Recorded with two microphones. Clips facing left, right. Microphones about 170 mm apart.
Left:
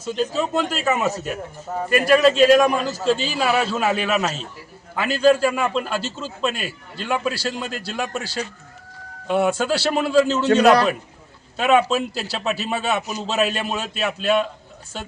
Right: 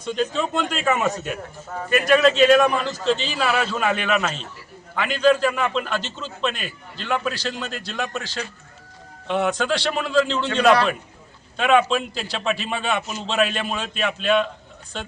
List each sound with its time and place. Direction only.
0.0 s a man's voice: 5° left (ahead or behind)
1.7 s a man's voice: 15° left (ahead or behind)
2.0 s a man's voice: 5° left (ahead or behind)
10.7 s a man's voice: 40° left (ahead or behind)
11.5 s a man's voice: 5° left (ahead or behind)